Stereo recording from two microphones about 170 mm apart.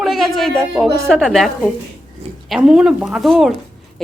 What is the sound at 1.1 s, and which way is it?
Speech, centre (ahead or behind).